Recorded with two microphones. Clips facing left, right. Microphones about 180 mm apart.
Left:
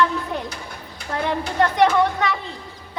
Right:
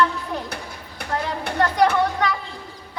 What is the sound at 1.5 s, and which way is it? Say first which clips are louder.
Speech: left 1 dB; 25° left (ahead or behind).